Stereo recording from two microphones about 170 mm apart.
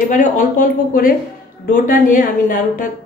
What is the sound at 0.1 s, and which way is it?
A woman's voice, 50° left (ahead or behind).